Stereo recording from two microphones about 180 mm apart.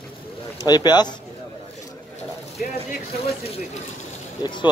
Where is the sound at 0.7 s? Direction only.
25° left (ahead or behind).